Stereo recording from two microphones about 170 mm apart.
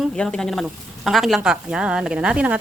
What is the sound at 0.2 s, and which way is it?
Speech, 5° left (ahead or behind).